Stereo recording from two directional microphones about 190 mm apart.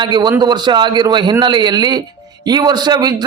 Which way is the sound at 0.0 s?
25° right (ahead or behind).